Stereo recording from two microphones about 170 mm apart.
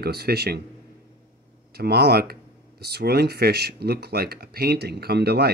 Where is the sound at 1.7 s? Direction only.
70° right (ahead or behind).